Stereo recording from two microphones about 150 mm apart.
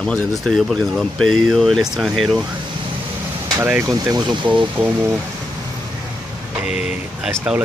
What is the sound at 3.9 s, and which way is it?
Speech, 25° right (ahead or behind).